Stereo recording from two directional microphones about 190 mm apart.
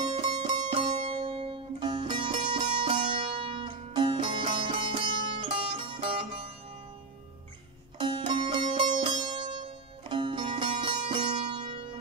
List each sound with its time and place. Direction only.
0.0 s music: 25° right (ahead or behind)
8.0 s music: 25° right (ahead or behind)